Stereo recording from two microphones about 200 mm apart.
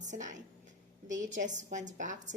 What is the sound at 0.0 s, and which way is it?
A woman's voice, 40° right (ahead or behind).